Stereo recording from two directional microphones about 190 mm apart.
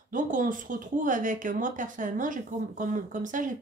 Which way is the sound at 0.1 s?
45° right (ahead or behind).